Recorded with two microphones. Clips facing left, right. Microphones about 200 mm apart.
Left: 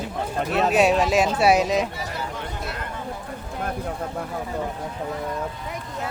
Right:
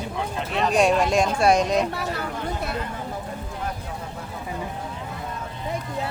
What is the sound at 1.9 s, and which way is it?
Speech, 60° right (ahead or behind).